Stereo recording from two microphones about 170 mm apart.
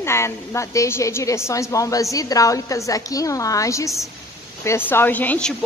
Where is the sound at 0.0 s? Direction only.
15° left (ahead or behind).